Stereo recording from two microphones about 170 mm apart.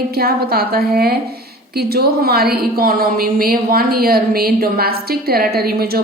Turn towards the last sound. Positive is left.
turn(degrees=-65)  # may be behind; listen again after turning